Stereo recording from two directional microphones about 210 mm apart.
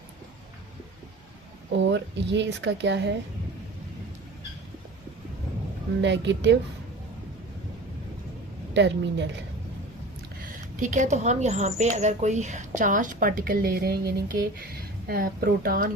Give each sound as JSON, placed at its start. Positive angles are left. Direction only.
{"t": 1.8, "sound": "speech", "side_deg": -60}
{"t": 6.0, "sound": "speech", "side_deg": -60}
{"t": 8.7, "sound": "speech", "side_deg": -60}
{"t": 10.8, "sound": "speech", "side_deg": -35}